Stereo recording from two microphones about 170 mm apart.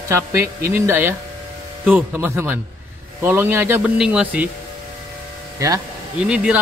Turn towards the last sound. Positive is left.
turn(degrees=-5)  # may be behind; listen again after turning